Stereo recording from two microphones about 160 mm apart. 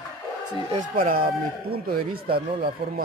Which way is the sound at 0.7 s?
60° right (ahead or behind).